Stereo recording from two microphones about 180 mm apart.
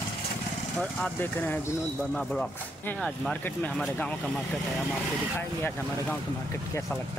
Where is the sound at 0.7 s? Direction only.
10° left (ahead or behind).